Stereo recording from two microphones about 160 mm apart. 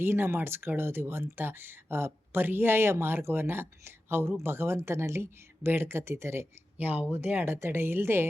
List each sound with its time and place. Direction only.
0.0 s speech: 15° right (ahead or behind)